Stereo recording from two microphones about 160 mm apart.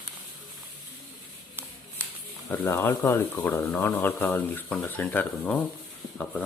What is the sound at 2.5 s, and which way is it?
Speech, 15° left (ahead or behind).